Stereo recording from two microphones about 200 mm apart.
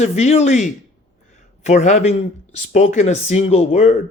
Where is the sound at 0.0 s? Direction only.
35° left (ahead or behind).